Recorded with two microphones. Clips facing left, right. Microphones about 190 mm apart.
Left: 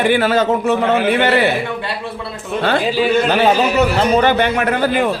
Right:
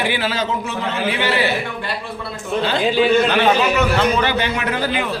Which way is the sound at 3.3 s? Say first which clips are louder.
Left 2 dB; 40° left (ahead or behind).